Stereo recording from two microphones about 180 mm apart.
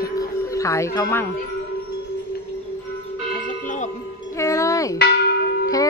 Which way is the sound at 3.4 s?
45° left (ahead or behind).